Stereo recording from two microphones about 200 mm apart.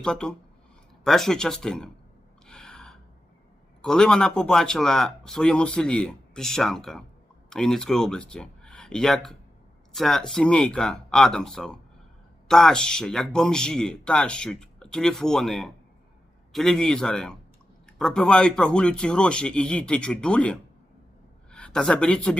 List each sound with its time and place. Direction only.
0.0 s speech: 5° left (ahead or behind)
2.5 s gasp: 5° left (ahead or behind)
3.8 s speech: 5° left (ahead or behind)